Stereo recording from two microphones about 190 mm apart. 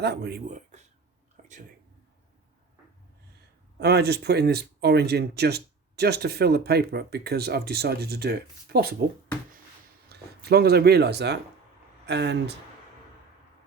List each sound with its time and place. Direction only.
0.0 s speech: 60° right (ahead or behind)
0.4 s speech: 40° right (ahead or behind)
1.4 s a sound: 40° right (ahead or behind)
3.8 s speech: 60° right (ahead or behind)
10.1 s speech: 55° right (ahead or behind)